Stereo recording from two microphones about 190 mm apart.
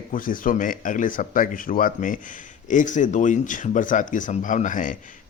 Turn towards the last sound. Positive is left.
turn(degrees=45)  # may be behind; listen again after turning